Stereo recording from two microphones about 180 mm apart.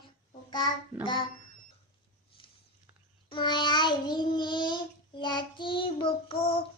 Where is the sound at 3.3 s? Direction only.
25° left (ahead or behind).